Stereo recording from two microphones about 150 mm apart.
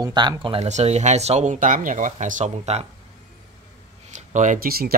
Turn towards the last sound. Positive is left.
turn(degrees=-90)